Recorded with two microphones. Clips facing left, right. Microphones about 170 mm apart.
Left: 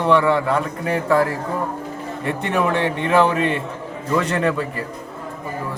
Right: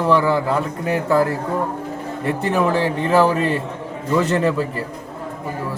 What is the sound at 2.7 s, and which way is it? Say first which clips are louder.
A man's voice: right 1 dB; 35° right (ahead or behind).